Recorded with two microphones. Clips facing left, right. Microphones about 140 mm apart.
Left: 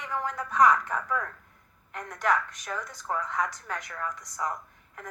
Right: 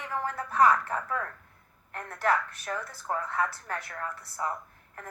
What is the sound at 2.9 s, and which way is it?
Speech, 5° right (ahead or behind).